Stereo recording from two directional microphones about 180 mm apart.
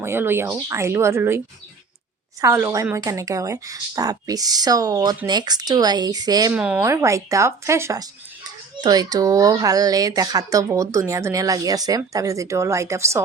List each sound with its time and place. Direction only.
0.0 s speech: 15° right (ahead or behind)
2.4 s speech: 15° right (ahead or behind)
6.5 s speech: 5° right (ahead or behind)
6.8 s speech: 15° right (ahead or behind)